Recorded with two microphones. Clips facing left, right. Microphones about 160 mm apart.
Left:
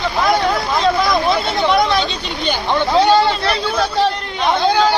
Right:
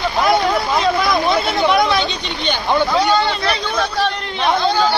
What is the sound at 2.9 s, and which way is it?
A man's voice, 30° left (ahead or behind).